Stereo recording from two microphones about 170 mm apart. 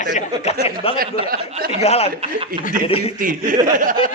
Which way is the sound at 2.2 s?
35° right (ahead or behind).